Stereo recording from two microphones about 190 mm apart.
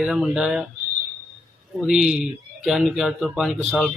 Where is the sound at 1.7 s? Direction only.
5° right (ahead or behind).